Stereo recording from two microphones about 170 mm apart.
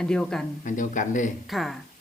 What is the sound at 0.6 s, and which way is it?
Speech, 50° left (ahead or behind).